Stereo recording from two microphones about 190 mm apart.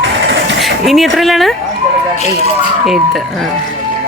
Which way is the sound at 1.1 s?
Centre (ahead or behind).